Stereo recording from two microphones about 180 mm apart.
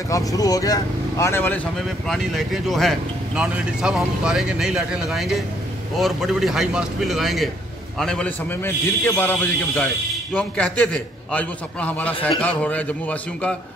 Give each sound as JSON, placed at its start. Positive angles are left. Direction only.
{"t": 0.1, "sound": "speech", "side_deg": 20}
{"t": 2.0, "sound": "a man's voice", "side_deg": 0}